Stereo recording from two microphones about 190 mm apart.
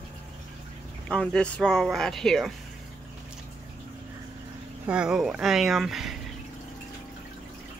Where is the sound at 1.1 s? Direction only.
5° left (ahead or behind).